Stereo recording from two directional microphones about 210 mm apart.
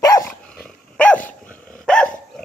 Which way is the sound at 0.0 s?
15° left (ahead or behind).